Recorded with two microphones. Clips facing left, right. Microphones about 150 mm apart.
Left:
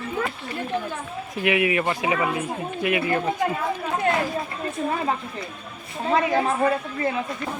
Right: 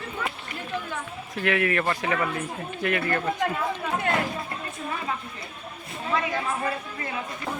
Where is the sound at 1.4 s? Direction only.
15° left (ahead or behind).